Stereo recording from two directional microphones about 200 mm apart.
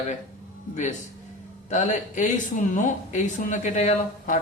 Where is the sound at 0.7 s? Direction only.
35° left (ahead or behind).